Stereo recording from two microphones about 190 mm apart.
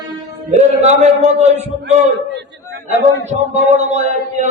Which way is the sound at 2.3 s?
65° right (ahead or behind).